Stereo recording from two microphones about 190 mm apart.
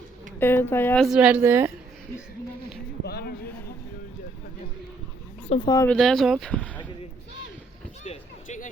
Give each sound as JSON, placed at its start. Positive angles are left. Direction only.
{"t": 0.3, "sound": "speech", "side_deg": 10}
{"t": 1.0, "sound": "speech", "side_deg": -5}
{"t": 3.0, "sound": "a sound", "side_deg": 55}
{"t": 5.6, "sound": "speech", "side_deg": 15}
{"t": 5.9, "sound": "speech", "side_deg": 0}
{"t": 8.0, "sound": "a sound", "side_deg": 35}